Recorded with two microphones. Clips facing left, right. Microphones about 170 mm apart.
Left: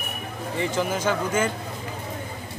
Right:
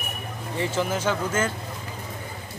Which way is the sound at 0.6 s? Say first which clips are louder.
Even; 10° left (ahead or behind).